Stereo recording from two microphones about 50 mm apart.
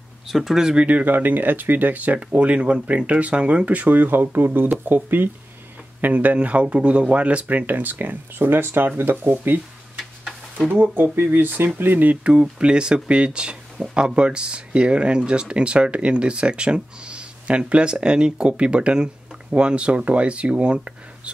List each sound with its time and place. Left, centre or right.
0.3 s speech: centre
0.7 s speech: right
6.1 s speech: right
10.7 s speech: right
12.2 s speech: right